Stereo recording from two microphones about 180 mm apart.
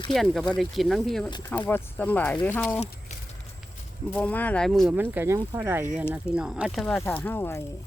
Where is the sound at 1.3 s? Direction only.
20° left (ahead or behind).